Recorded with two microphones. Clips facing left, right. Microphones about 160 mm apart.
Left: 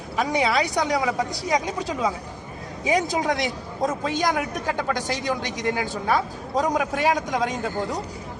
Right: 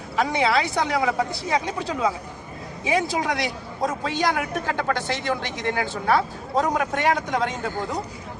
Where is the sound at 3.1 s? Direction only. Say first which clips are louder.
Left 1 dB; 20° left (ahead or behind).